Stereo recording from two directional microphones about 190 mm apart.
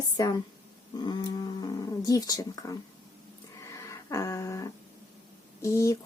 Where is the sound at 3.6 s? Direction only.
15° left (ahead or behind).